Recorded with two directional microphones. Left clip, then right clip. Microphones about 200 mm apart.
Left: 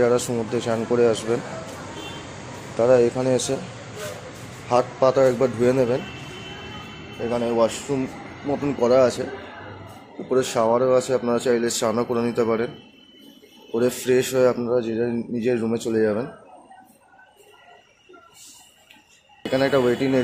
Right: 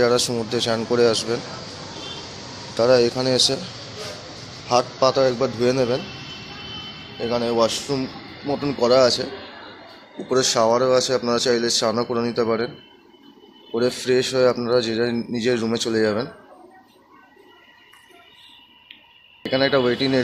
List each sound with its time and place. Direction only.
0.5 s a man's voice: 5° left (ahead or behind)
2.8 s a man's voice: 5° left (ahead or behind)
4.6 s a man's voice: 15° left (ahead or behind)
7.2 s a man's voice: 5° left (ahead or behind)
10.3 s speech: 5° left (ahead or behind)
19.4 s a man's voice: 10° left (ahead or behind)